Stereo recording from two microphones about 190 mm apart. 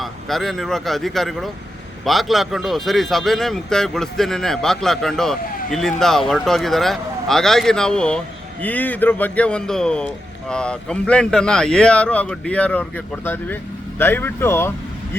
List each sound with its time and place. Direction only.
0.0 s a man's voice: centre (ahead or behind)